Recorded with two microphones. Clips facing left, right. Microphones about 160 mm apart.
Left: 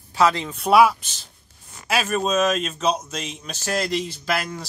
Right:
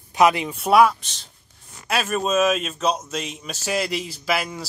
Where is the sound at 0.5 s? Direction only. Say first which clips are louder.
Even; centre (ahead or behind).